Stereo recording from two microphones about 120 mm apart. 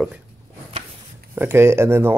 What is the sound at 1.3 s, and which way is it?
Speech, 20° right (ahead or behind).